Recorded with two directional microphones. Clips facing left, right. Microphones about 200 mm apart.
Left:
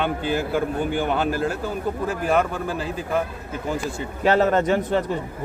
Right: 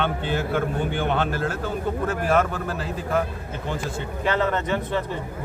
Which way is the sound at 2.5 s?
Centre (ahead or behind).